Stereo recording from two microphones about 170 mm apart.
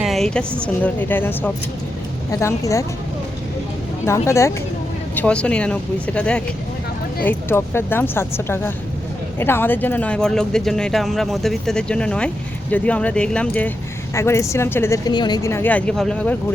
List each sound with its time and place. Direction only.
0.0 s a sound: centre (ahead or behind)
0.6 s speech: 10° left (ahead or behind)
4.0 s speech: 15° left (ahead or behind)